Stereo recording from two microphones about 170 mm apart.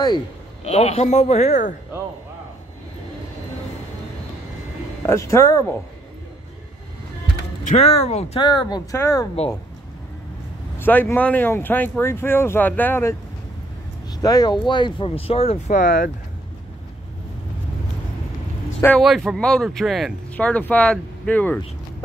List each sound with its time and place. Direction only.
0.7 s speech: 40° left (ahead or behind)
5.0 s speech: 15° left (ahead or behind)
7.7 s speech: 40° left (ahead or behind)
8.4 s speech: 25° left (ahead or behind)
10.8 s speech: 10° left (ahead or behind)
14.2 s speech: 25° left (ahead or behind); by 16.1 s 50° left (ahead or behind)
18.8 s speech: 10° left (ahead or behind)